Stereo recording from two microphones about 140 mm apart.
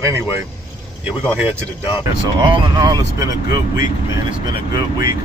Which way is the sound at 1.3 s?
15° right (ahead or behind).